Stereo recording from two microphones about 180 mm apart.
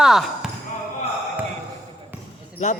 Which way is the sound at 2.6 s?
45° left (ahead or behind).